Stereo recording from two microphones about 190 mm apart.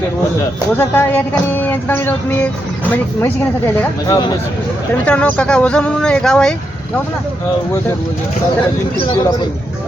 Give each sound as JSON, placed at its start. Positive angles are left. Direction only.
{"t": 0.8, "sound": "speech", "side_deg": 10}
{"t": 5.0, "sound": "speech", "side_deg": 5}